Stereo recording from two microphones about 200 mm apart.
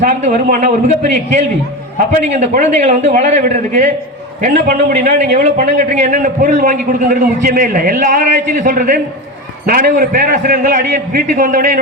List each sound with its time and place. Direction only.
0.0 s a man's voice: 35° right (ahead or behind)